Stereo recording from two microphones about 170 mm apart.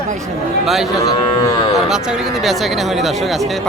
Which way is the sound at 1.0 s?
25° left (ahead or behind).